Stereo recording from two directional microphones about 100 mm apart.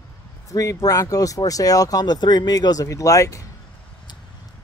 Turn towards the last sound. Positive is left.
turn(degrees=35)  # may be behind; listen again after turning